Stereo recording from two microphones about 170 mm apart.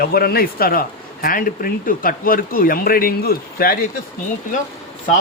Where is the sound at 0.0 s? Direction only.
60° left (ahead or behind).